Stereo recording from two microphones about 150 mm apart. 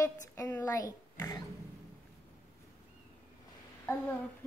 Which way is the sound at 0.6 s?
25° left (ahead or behind).